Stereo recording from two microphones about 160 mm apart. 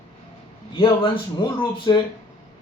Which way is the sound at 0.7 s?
30° left (ahead or behind).